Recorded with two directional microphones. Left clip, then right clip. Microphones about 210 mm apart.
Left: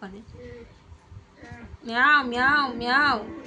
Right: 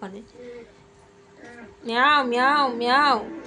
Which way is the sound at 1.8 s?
20° left (ahead or behind).